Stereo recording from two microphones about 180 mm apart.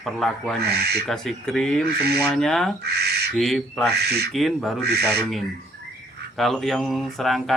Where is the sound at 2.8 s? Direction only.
65° right (ahead or behind).